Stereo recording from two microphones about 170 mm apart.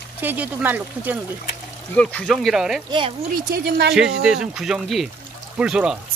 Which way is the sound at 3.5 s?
65° right (ahead or behind).